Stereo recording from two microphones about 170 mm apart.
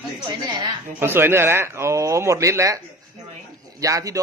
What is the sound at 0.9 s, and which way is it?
A man's voice, 15° right (ahead or behind).